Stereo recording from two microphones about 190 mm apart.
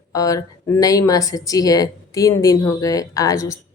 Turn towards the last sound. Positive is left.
turn(degrees=15)  # may be behind; listen again after turning